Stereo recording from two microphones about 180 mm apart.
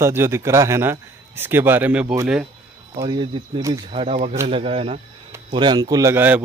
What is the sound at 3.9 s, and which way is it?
A man's voice, 35° right (ahead or behind).